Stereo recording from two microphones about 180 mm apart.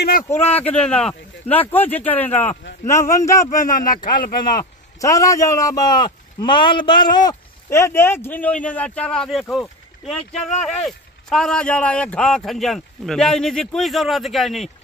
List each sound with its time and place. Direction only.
0.3 s speech: 35° left (ahead or behind)
0.6 s speech: 5° left (ahead or behind)
3.4 s speech: 50° left (ahead or behind)
4.6 s a man's voice: 20° left (ahead or behind); by 14.7 s centre (ahead or behind)